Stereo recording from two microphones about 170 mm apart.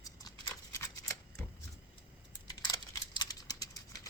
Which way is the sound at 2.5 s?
25° left (ahead or behind).